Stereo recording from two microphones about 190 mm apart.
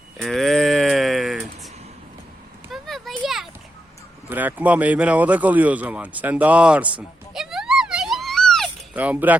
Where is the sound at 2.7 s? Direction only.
Centre (ahead or behind).